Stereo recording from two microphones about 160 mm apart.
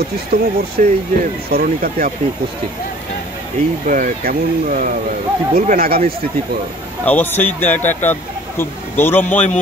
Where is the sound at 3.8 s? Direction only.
60° right (ahead or behind).